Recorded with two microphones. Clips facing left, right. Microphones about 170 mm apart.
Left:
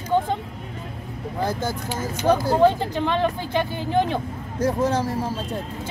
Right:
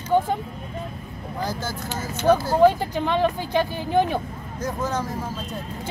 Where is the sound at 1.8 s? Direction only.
10° left (ahead or behind).